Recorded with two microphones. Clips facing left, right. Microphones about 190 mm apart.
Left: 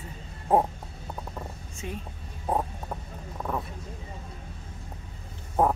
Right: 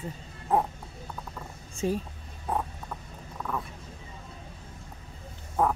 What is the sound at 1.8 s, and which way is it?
Speech, 35° right (ahead or behind).